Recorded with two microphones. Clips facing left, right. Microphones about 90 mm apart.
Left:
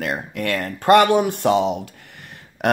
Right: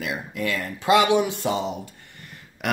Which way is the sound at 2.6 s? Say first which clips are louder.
Left 6 dB; 55° left (ahead or behind).